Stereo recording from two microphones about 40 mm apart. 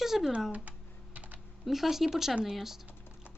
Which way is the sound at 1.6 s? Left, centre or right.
Centre.